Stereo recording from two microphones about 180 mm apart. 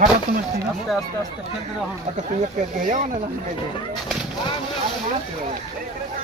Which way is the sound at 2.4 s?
45° right (ahead or behind).